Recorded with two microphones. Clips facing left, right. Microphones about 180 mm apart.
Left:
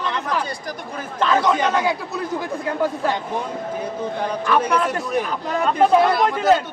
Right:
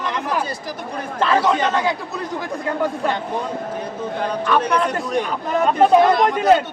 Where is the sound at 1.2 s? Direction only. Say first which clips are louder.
Even; 5° right (ahead or behind).